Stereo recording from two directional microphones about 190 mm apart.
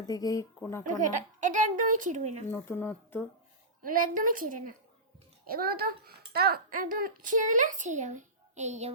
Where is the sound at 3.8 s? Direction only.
45° right (ahead or behind).